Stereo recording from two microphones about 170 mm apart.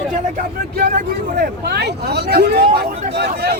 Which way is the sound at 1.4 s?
75° right (ahead or behind).